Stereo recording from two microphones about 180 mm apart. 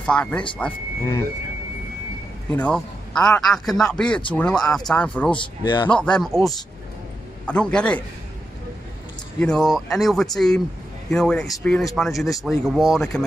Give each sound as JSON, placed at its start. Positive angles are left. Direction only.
{"t": 0.0, "sound": "speech", "side_deg": 5}
{"t": 2.5, "sound": "a man's voice", "side_deg": 5}
{"t": 5.6, "sound": "a man's voice", "side_deg": 25}
{"t": 5.9, "sound": "a man's voice", "side_deg": 5}
{"t": 7.4, "sound": "a man's voice", "side_deg": 5}
{"t": 9.4, "sound": "a man's voice", "side_deg": 5}